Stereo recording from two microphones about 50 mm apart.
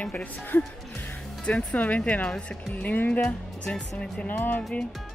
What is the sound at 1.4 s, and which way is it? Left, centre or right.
Speech, left.